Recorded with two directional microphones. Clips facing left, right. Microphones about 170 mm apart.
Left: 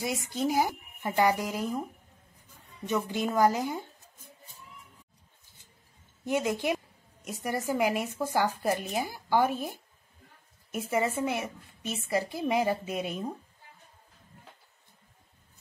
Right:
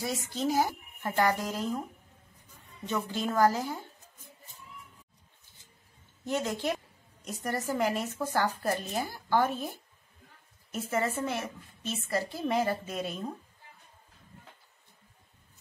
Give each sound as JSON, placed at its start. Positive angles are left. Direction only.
{"t": 0.0, "sound": "a woman's voice", "side_deg": 15}
{"t": 2.9, "sound": "a woman's voice", "side_deg": 15}
{"t": 6.2, "sound": "a woman's voice", "side_deg": 15}
{"t": 10.7, "sound": "a woman's voice", "side_deg": 15}